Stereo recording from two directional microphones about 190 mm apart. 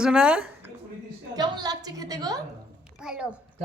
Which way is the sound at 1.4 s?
20° right (ahead or behind).